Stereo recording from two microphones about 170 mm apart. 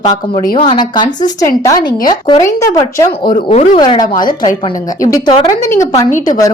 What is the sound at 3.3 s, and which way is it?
Speech, 50° left (ahead or behind).